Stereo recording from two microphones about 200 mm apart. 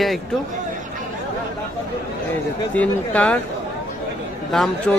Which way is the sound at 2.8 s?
5° left (ahead or behind).